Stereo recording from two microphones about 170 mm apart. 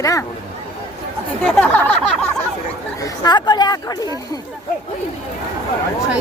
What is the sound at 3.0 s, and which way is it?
Speech, 25° left (ahead or behind).